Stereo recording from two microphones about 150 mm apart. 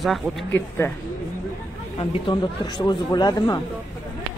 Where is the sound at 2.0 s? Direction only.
30° left (ahead or behind).